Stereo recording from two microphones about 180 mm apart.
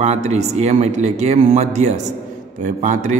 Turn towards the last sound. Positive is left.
turn(degrees=-45)  # may be behind; listen again after turning